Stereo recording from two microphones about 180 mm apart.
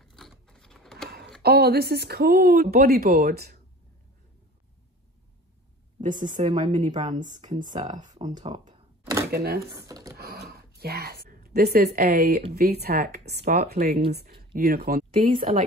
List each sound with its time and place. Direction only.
0.0 s a sound: centre (ahead or behind)
1.4 s speech: 60° right (ahead or behind)
6.0 s speech: 45° right (ahead or behind)
9.3 s speech: 60° right (ahead or behind)
9.7 s speech: 15° right (ahead or behind)
10.1 s a sound: 60° right (ahead or behind)
12.5 s speech: 60° right (ahead or behind)